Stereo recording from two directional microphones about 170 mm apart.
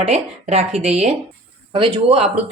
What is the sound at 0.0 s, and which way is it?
Speech, 40° right (ahead or behind).